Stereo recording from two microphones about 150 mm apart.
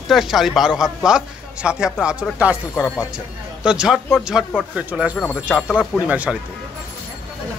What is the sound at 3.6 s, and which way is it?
A man's voice, 5° right (ahead or behind).